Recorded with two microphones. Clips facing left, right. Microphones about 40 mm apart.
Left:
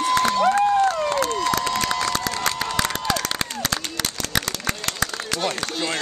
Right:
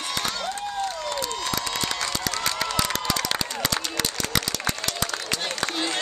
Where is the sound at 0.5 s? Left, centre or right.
Left.